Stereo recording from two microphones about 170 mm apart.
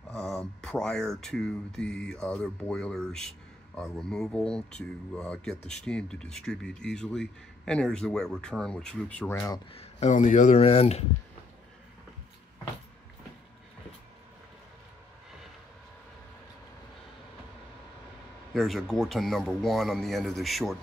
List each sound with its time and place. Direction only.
0.1 s speech: 5° left (ahead or behind)
9.7 s speech: 40° left (ahead or behind)
18.5 s speech: centre (ahead or behind)